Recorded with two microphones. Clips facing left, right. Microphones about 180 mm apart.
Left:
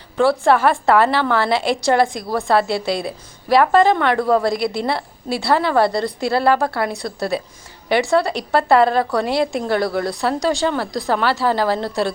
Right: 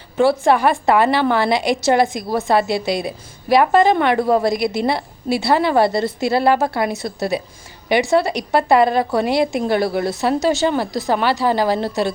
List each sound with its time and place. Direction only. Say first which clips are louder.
0.3 s a woman's voice: left 1 dB; 15° right (ahead or behind)
10.5 s speech: right 2 dB; 5° right (ahead or behind)
11.1 s a woman's voice: right 1 dB; 15° right (ahead or behind)